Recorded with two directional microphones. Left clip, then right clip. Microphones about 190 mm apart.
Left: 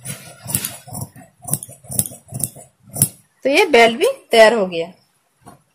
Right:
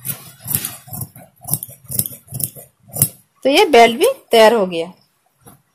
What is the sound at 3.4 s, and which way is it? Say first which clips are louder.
Speech: right 2 dB; 30° right (ahead or behind).